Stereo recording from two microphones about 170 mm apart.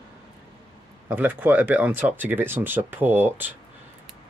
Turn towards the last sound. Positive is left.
turn(degrees=-10)  # may be behind; listen again after turning